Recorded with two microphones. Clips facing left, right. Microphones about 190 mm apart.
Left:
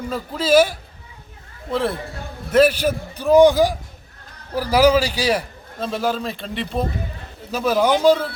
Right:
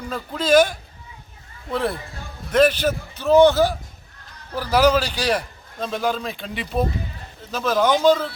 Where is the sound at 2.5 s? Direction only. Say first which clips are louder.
Left 2 dB; 5° left (ahead or behind).